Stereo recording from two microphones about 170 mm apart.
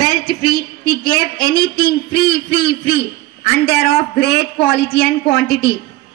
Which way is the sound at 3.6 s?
70° left (ahead or behind).